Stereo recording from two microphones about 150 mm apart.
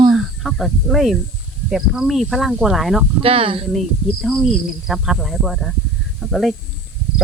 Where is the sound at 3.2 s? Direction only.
35° right (ahead or behind).